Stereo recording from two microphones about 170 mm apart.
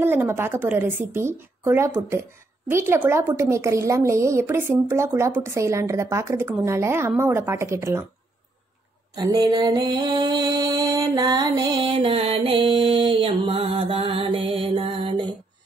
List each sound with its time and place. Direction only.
0.0 s a woman's voice: 15° right (ahead or behind)
9.1 s mantra: 20° right (ahead or behind)